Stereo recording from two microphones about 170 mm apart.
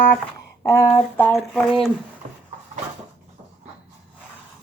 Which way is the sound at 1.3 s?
5° left (ahead or behind).